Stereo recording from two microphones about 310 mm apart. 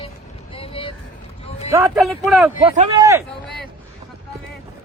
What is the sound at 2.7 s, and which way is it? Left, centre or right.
Speech, centre.